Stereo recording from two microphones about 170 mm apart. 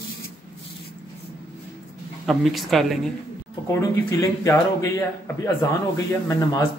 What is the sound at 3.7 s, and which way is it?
A man's voice, 20° left (ahead or behind).